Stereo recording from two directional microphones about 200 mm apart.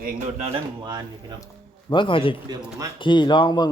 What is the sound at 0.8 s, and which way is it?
Speech, 20° right (ahead or behind).